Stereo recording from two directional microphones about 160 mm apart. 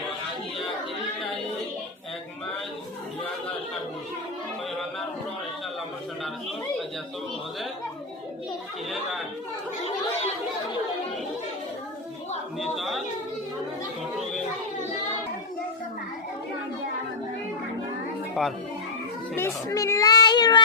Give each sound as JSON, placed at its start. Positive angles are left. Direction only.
{"t": 12.7, "sound": "speech", "side_deg": 0}
{"t": 18.4, "sound": "speech", "side_deg": 0}
{"t": 19.4, "sound": "a child's voice", "side_deg": 20}